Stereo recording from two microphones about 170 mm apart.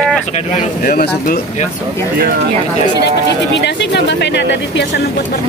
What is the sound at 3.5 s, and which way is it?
Speech, 90° left.